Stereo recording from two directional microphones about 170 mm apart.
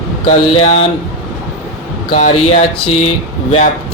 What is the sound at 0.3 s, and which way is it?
Speech, 40° left (ahead or behind).